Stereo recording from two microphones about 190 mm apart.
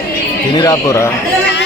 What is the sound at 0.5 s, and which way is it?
Speech, 20° left (ahead or behind).